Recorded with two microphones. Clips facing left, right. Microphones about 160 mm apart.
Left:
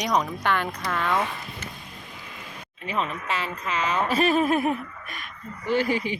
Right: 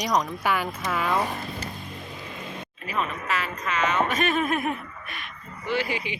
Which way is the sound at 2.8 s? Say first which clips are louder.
Left 1 dB; 25° left (ahead or behind).